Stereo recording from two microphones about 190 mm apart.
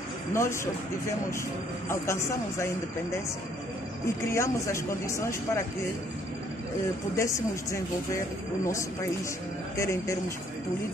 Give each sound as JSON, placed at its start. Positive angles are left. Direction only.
{"t": 0.3, "sound": "speech", "side_deg": 15}
{"t": 1.9, "sound": "speech", "side_deg": 15}
{"t": 4.3, "sound": "speech", "side_deg": 15}
{"t": 7.2, "sound": "speech", "side_deg": 15}
{"t": 9.8, "sound": "speech", "side_deg": 15}